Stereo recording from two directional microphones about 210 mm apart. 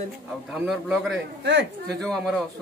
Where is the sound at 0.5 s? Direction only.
Centre (ahead or behind).